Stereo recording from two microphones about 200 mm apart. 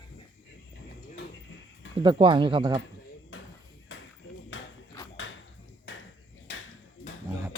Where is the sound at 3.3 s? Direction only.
80° left.